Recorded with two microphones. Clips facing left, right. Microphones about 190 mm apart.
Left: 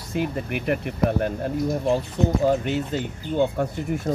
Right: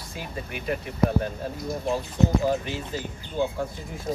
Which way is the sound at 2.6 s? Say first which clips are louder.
Left 7 dB; 65° left (ahead or behind).